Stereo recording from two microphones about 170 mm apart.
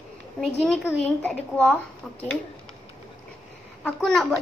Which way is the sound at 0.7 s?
5° left (ahead or behind).